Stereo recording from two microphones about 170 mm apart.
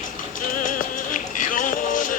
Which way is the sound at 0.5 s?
50° left (ahead or behind).